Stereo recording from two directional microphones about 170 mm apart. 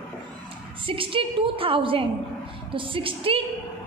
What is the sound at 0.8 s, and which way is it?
A woman's voice, 30° right (ahead or behind).